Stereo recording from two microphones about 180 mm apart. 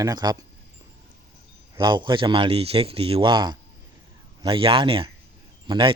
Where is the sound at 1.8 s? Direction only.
25° right (ahead or behind).